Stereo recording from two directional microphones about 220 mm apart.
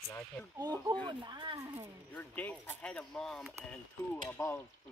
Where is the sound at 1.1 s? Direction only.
20° right (ahead or behind).